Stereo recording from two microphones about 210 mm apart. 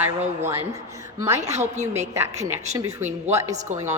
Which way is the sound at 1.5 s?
35° right (ahead or behind).